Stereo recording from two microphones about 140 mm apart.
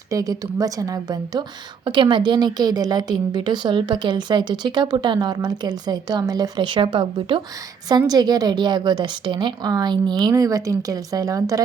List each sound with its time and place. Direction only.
0.1 s a woman's voice: 25° right (ahead or behind)